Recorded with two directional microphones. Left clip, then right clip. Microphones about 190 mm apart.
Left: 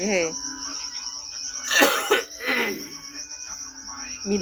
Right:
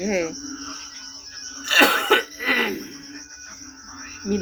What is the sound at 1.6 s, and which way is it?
Cough, 20° right (ahead or behind).